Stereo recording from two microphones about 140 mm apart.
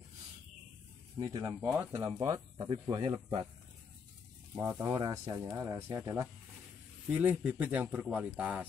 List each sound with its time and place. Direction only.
1.2 s speech: 25° right (ahead or behind)
2.0 s speech: 25° right (ahead or behind)
2.9 s speech: 35° right (ahead or behind)
4.6 s speech: 15° right (ahead or behind)